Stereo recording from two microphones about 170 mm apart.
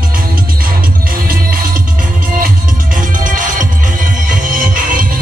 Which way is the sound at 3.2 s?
50° right (ahead or behind).